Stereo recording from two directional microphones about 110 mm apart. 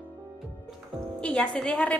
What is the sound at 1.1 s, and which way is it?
Speech, 10° left (ahead or behind).